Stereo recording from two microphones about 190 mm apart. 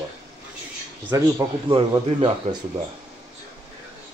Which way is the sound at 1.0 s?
15° right (ahead or behind).